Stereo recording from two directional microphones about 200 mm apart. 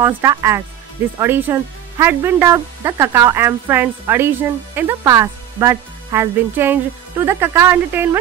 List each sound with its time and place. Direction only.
0.0 s speech: 15° right (ahead or behind)